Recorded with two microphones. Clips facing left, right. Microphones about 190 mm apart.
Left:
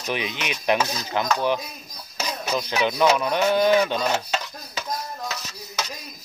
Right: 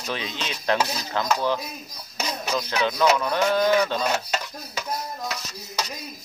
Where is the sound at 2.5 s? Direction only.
15° left (ahead or behind).